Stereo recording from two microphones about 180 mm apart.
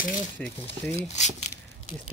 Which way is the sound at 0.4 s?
5° left (ahead or behind).